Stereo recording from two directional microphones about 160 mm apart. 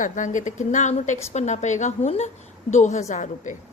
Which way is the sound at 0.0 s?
50° left (ahead or behind).